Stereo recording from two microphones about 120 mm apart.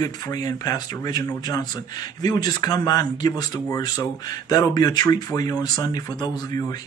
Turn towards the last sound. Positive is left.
turn(degrees=35)  # may be behind; listen again after turning